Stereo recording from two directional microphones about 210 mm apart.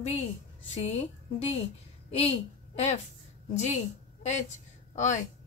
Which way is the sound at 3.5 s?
35° left (ahead or behind).